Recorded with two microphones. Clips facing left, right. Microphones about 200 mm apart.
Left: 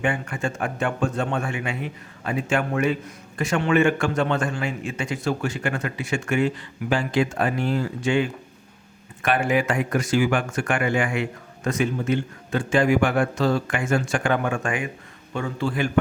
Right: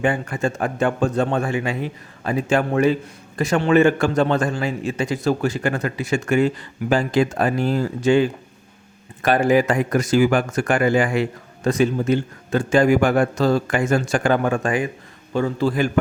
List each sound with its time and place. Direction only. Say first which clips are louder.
0.0 s a man's voice: right 4 dB; 35° right (ahead or behind)